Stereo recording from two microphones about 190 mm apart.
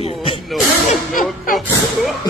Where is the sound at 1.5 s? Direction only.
Centre (ahead or behind).